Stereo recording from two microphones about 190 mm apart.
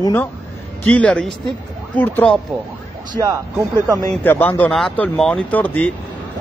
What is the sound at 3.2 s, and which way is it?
Speech, 15° right (ahead or behind).